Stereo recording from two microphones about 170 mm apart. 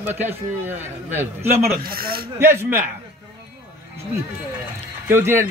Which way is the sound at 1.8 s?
60° right (ahead or behind).